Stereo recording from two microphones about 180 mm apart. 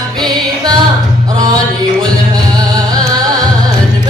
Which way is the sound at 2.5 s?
20° right (ahead or behind).